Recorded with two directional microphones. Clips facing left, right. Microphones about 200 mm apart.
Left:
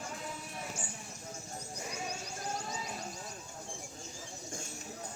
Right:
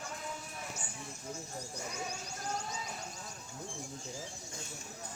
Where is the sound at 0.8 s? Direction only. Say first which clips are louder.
Left 3 dB; 30° left (ahead or behind).